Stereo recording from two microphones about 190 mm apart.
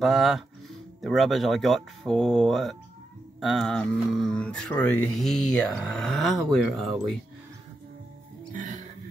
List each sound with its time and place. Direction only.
0.0 s speech: centre (ahead or behind)
8.5 s music: 40° right (ahead or behind)